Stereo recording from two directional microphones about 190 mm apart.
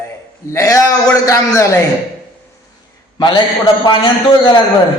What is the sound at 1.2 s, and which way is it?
Speech, 15° left (ahead or behind).